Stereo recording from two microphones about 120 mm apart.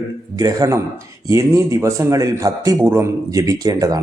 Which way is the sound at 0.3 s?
30° right (ahead or behind).